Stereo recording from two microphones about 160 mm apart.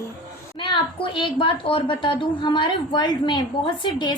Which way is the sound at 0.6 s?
30° left (ahead or behind).